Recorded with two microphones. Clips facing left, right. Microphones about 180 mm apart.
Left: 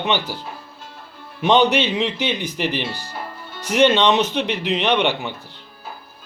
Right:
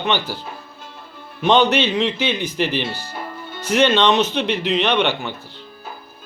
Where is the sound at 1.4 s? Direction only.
15° left (ahead or behind).